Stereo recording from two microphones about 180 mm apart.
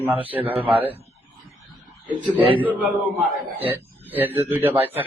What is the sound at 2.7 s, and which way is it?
Speech, 5° right (ahead or behind).